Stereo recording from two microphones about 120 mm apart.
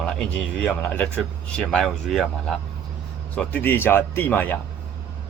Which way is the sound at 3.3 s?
15° left (ahead or behind).